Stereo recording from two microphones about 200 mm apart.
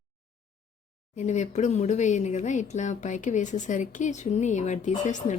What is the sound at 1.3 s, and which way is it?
Speech, 35° left (ahead or behind).